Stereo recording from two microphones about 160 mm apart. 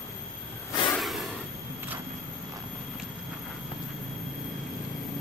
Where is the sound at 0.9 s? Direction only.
Centre (ahead or behind).